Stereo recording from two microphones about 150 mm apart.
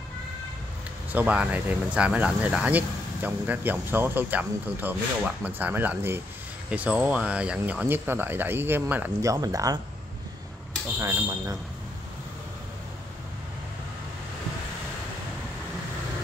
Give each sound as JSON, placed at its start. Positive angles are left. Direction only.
{"t": 1.1, "sound": "speech", "side_deg": -10}
{"t": 9.3, "sound": "speech", "side_deg": -20}
{"t": 11.0, "sound": "speech", "side_deg": -20}